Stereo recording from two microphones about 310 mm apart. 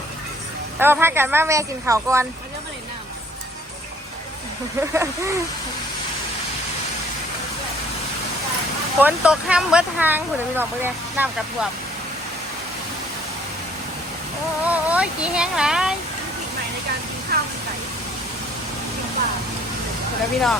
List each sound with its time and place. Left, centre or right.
0.8 s speech: centre
4.8 s speech: centre
9.0 s speech: centre
14.6 s speech: centre
17.3 s a sound: right